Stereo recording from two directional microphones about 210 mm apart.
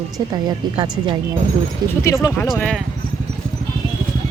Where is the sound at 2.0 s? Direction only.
15° left (ahead or behind).